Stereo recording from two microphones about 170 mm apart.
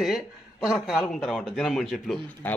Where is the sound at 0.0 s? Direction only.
Centre (ahead or behind).